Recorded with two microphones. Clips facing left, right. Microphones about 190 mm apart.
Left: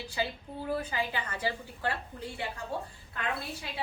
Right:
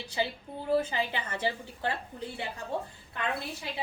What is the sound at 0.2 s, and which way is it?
A woman's voice, 25° right (ahead or behind).